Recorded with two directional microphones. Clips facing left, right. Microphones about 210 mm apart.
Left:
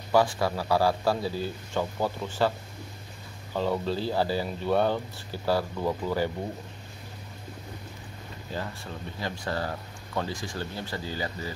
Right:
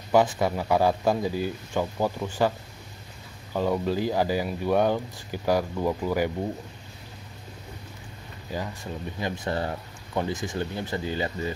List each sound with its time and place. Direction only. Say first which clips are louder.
0.1 s speech: right 2 dB; 20° right (ahead or behind)
3.5 s speech: right 3 dB; 15° right (ahead or behind)
8.5 s speech: right 3 dB; 10° right (ahead or behind)